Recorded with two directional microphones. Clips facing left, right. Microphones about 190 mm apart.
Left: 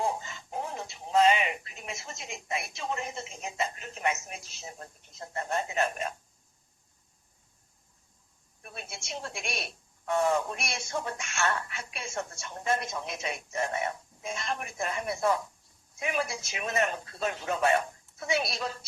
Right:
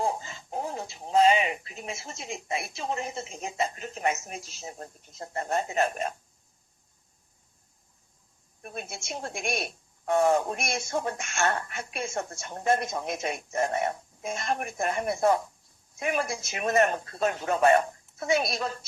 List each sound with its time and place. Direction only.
0.2 s speech: 35° right (ahead or behind)
8.6 s speech: 45° right (ahead or behind)